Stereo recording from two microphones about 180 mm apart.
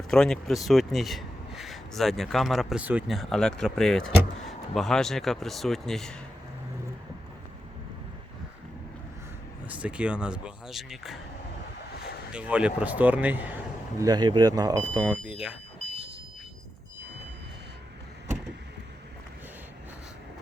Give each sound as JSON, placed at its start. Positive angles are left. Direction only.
{"t": 0.1, "sound": "speech", "side_deg": 5}
{"t": 9.6, "sound": "speech", "side_deg": -5}
{"t": 12.3, "sound": "speech", "side_deg": -5}
{"t": 14.0, "sound": "speech", "side_deg": -20}